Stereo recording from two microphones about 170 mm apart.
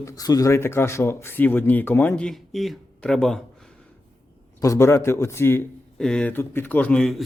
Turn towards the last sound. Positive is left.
turn(degrees=0)  # may be behind; listen again after turning